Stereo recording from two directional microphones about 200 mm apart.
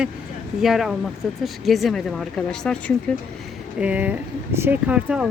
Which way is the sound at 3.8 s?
5° right (ahead or behind).